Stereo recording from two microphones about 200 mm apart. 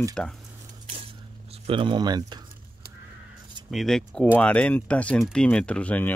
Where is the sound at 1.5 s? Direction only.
25° right (ahead or behind).